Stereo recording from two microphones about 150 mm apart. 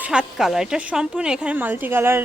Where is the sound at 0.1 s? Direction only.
5° right (ahead or behind).